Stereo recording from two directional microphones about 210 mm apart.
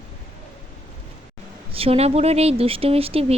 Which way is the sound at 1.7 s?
30° right (ahead or behind).